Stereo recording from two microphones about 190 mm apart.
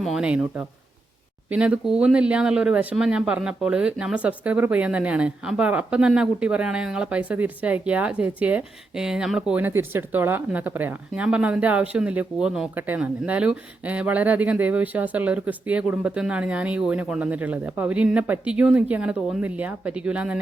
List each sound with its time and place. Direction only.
0.0 s speech: 5° right (ahead or behind)